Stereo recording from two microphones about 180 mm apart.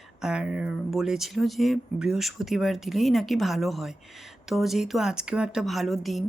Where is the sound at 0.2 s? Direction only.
5° right (ahead or behind).